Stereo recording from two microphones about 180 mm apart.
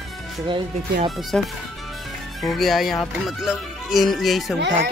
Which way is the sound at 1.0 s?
Centre (ahead or behind).